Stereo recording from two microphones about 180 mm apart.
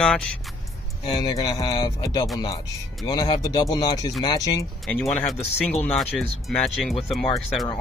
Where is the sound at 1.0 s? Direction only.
25° left (ahead or behind).